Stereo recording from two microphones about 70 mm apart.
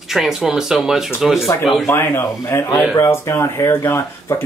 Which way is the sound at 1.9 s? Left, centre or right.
Left.